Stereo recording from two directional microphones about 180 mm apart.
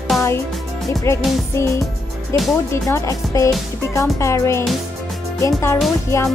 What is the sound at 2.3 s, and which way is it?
Speech, 15° left (ahead or behind).